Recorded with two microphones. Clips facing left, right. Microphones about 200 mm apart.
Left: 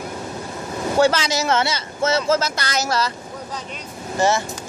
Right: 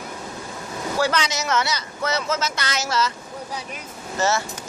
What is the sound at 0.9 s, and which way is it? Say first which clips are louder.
Speech: left 6 dB; 25° left (ahead or behind).